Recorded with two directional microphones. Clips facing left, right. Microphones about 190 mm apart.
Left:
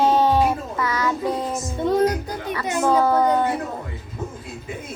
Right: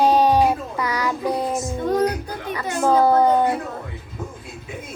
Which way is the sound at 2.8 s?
10° right (ahead or behind).